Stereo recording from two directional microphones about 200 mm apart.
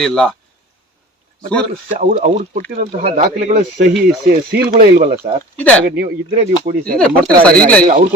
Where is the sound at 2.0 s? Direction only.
40° right (ahead or behind).